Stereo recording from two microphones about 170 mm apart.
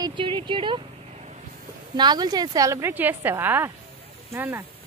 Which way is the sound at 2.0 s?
25° right (ahead or behind).